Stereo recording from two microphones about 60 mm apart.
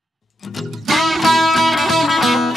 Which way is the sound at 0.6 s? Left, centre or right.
Centre.